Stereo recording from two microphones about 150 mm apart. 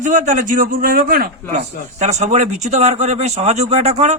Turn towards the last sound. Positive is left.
turn(degrees=-45)  # may be behind; listen again after turning